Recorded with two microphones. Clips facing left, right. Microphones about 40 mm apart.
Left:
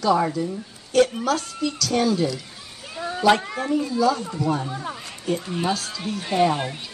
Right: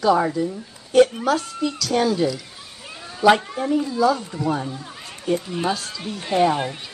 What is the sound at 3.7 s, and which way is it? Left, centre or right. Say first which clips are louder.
A woman's voice: right 2 dB; centre.